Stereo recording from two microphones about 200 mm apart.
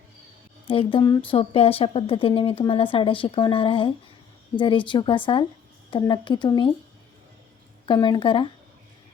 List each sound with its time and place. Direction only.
0.7 s a woman's voice: 25° left (ahead or behind)
7.9 s a woman's voice: 20° left (ahead or behind)